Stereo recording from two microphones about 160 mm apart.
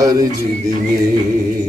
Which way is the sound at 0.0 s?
20° right (ahead or behind).